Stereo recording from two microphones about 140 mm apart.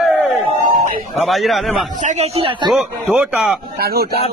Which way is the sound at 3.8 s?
90° right.